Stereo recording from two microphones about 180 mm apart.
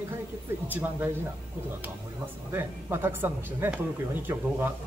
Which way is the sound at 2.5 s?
10° right (ahead or behind).